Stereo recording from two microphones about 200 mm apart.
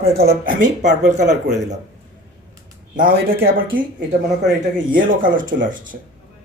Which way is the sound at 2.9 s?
45° right (ahead or behind).